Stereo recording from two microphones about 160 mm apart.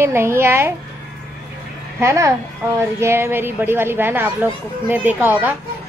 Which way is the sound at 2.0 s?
20° right (ahead or behind).